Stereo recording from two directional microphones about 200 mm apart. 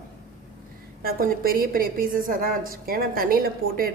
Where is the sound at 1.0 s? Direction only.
45° right (ahead or behind).